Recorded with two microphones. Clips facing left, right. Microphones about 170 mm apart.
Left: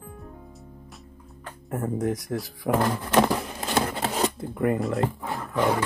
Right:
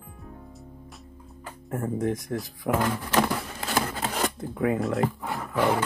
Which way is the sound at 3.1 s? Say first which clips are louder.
Left 6 dB; 25° left (ahead or behind).